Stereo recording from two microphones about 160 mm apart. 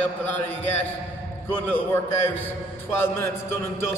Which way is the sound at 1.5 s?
10° left (ahead or behind).